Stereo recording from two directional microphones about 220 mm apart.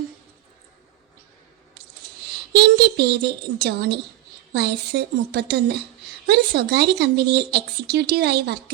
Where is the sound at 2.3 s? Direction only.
50° right (ahead or behind).